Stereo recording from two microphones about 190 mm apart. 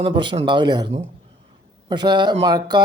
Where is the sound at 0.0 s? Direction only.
25° right (ahead or behind).